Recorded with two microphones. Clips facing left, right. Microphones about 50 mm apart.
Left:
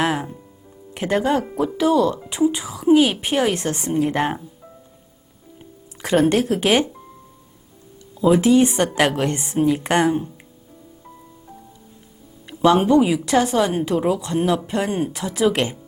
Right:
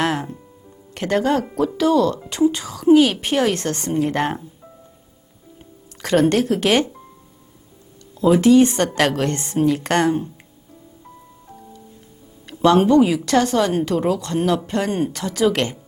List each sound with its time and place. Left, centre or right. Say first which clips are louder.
0.0 s speech: even; centre
8.1 s a sound: even; centre
8.4 s speech: right 2 dB; centre
12.5 s speech: right 1 dB; centre